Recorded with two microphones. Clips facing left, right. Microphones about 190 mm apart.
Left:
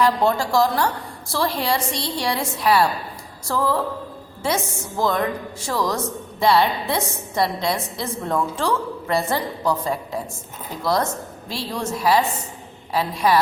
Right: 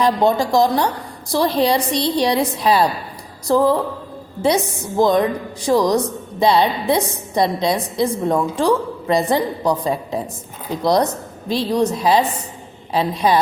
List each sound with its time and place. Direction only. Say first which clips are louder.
0.0 s a woman's voice: right 3 dB; 15° right (ahead or behind)